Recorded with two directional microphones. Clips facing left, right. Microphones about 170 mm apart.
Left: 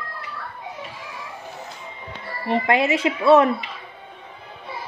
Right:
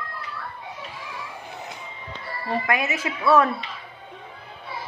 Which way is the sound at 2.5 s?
25° left (ahead or behind).